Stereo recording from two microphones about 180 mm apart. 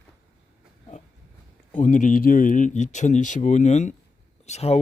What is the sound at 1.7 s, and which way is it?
Speech, 45° left (ahead or behind).